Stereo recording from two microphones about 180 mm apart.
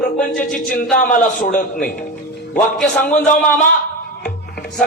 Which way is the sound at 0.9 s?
50° left (ahead or behind).